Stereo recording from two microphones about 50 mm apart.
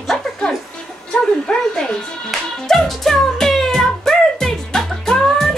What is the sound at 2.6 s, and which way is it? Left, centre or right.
Music, centre.